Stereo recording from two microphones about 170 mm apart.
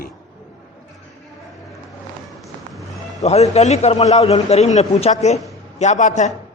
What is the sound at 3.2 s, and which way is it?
A man's voice, 40° left (ahead or behind).